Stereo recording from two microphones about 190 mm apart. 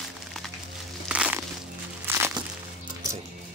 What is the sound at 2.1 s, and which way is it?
Music, 15° right (ahead or behind).